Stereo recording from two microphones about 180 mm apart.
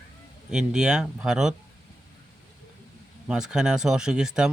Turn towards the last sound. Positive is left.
turn(degrees=-5)  # may be behind; listen again after turning